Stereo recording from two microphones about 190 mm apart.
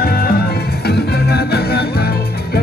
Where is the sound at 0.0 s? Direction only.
55° left (ahead or behind).